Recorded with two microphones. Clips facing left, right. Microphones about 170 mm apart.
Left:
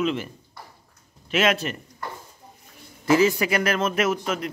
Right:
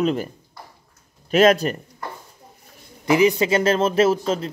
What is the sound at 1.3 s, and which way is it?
Speech, 40° right (ahead or behind).